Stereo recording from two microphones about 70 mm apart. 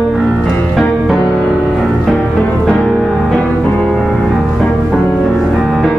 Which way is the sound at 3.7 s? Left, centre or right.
Centre.